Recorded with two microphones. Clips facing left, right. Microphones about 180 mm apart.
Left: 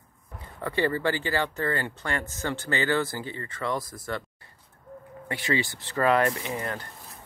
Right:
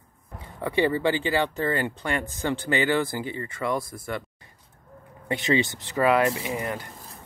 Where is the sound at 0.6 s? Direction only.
15° right (ahead or behind).